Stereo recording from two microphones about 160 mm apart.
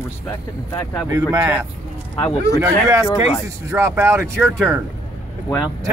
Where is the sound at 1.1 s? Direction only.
20° right (ahead or behind).